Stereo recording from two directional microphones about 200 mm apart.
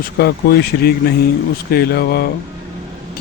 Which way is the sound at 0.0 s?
50° left (ahead or behind).